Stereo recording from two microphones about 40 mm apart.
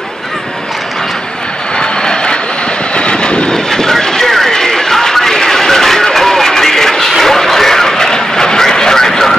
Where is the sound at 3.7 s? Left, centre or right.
Centre.